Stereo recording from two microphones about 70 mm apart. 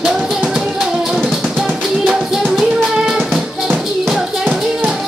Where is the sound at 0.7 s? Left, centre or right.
Centre.